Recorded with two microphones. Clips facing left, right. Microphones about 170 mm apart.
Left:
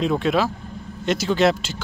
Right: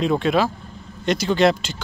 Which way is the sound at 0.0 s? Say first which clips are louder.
Right 1 dB; centre (ahead or behind).